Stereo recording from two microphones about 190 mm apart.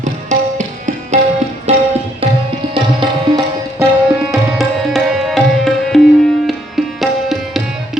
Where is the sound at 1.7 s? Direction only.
35° right (ahead or behind).